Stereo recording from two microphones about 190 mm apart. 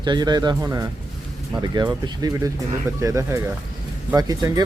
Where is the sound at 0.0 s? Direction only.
20° right (ahead or behind).